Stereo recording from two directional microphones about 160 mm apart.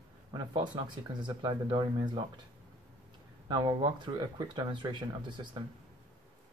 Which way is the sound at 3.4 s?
30° right (ahead or behind).